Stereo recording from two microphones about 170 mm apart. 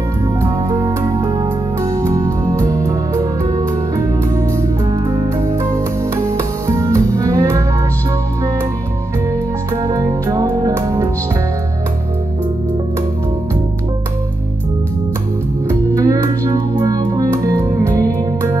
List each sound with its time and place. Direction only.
0.4 s music: 20° right (ahead or behind)
9.8 s music: 20° right (ahead or behind)
15.9 s music: 20° right (ahead or behind)